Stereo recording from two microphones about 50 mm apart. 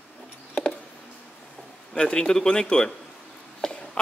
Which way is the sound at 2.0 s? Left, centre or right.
Centre.